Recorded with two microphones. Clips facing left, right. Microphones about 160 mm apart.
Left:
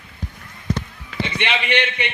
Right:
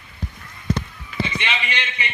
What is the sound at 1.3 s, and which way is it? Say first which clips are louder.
Speech: left 5 dB; 60° left (ahead or behind).